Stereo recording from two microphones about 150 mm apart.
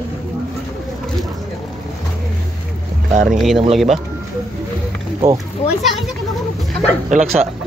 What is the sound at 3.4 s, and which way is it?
Speech, centre (ahead or behind).